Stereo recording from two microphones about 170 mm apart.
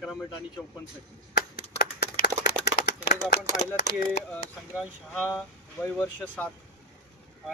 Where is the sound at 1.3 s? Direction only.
70° left (ahead or behind).